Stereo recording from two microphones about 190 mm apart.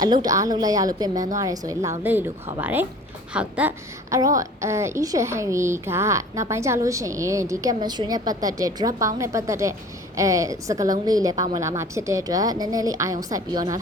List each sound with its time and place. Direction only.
0.0 s a woman's voice: 20° right (ahead or behind)